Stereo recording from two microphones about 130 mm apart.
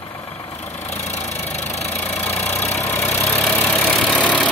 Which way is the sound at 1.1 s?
60° left (ahead or behind).